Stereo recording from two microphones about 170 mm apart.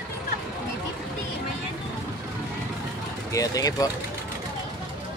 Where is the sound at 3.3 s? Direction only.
20° left (ahead or behind).